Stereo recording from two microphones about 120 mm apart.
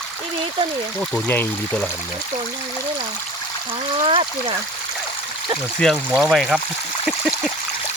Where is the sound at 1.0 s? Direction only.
15° left (ahead or behind).